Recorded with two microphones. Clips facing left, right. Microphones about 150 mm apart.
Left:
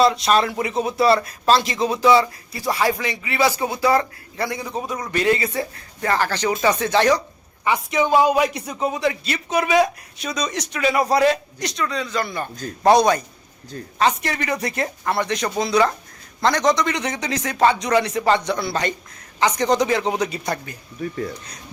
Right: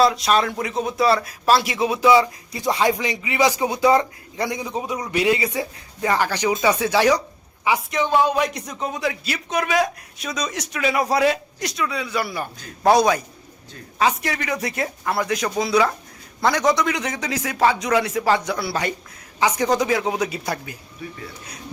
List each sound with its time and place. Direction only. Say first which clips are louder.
0.0 s speech: left 1 dB; centre (ahead or behind)
7.9 s a man's voice: left 4 dB; 10° left (ahead or behind)
21.0 s speech: left 9 dB; 45° left (ahead or behind)